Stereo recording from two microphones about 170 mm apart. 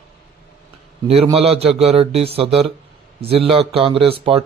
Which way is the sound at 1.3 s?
35° right (ahead or behind).